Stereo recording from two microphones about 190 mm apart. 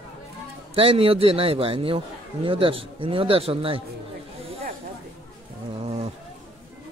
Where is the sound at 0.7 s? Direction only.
30° right (ahead or behind).